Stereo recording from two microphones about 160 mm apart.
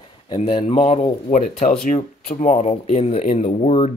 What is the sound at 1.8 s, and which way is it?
Speech, 45° left (ahead or behind).